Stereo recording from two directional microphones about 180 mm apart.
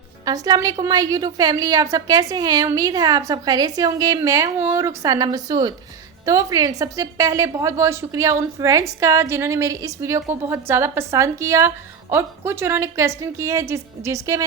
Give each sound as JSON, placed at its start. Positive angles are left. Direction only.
{"t": 0.3, "sound": "a woman's voice", "side_deg": -20}